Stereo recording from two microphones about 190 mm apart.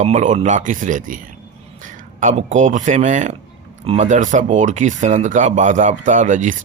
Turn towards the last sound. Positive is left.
turn(degrees=-40)  # may be behind; listen again after turning